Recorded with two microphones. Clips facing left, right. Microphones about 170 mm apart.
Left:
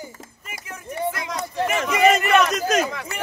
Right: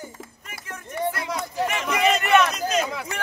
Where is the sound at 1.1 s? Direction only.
5° right (ahead or behind).